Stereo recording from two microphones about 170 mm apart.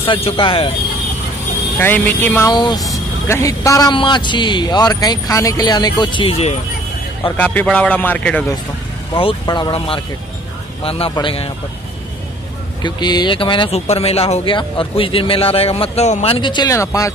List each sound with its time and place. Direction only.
0.0 s speech: 30° left (ahead or behind)
1.8 s a man's voice: 10° left (ahead or behind)
2.5 s a man's voice: 25° left (ahead or behind)
7.3 s a man's voice: 10° left (ahead or behind)
9.1 s speech: 30° left (ahead or behind)
12.8 s speech: 25° left (ahead or behind)